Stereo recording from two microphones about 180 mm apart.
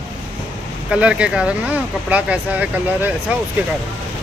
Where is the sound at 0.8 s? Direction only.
5° right (ahead or behind).